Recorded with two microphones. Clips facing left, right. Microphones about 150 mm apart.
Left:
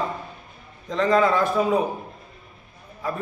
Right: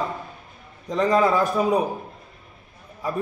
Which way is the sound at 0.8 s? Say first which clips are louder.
Even; 15° right (ahead or behind).